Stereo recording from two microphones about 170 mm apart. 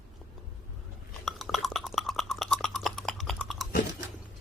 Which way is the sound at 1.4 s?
Centre (ahead or behind).